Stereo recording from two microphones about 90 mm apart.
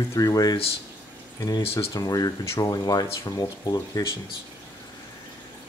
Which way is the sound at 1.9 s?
45° left (ahead or behind).